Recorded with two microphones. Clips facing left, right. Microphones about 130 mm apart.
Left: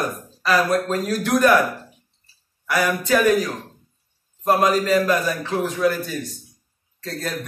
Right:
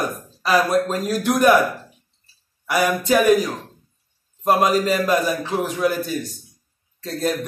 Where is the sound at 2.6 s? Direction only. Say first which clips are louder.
Right 2 dB; 15° right (ahead or behind).